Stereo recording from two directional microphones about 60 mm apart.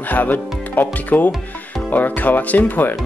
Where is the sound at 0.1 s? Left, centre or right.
Left.